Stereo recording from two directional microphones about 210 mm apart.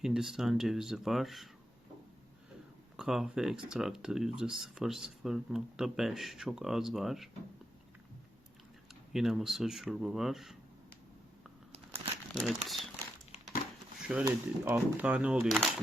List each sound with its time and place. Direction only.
0.0 s speech: centre (ahead or behind)
3.0 s speech: centre (ahead or behind)
8.9 s speech: centre (ahead or behind)
11.7 s crumpling: 30° right (ahead or behind)
12.3 s speech: centre (ahead or behind)
14.3 s speech: 10° right (ahead or behind)